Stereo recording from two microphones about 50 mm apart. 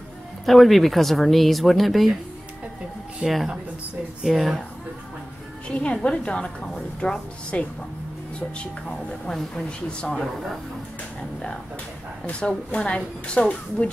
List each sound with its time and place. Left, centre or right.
0.5 s speech: centre
3.3 s speech: centre
5.7 s a woman's voice: left
9.7 s speech: left
12.3 s speech: centre